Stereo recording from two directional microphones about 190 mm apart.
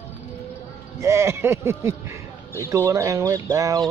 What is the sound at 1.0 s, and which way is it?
Speech, 15° right (ahead or behind).